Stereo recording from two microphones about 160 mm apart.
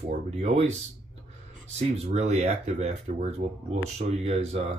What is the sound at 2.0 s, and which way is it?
Speech, 45° right (ahead or behind).